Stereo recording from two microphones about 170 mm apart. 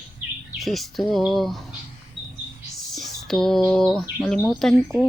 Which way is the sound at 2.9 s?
Centre (ahead or behind).